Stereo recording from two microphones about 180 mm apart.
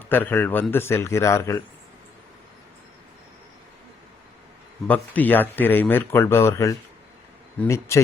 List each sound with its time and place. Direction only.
0.1 s speech: 10° left (ahead or behind)
4.9 s speech: 10° left (ahead or behind)